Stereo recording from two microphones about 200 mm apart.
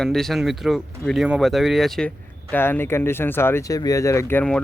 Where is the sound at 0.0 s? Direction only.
Centre (ahead or behind).